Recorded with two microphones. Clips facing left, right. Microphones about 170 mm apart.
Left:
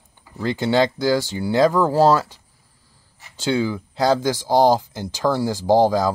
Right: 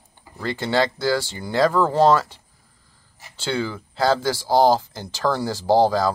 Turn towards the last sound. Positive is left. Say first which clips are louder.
# left 1 dB
turn(degrees=15)  # may be behind; listen again after turning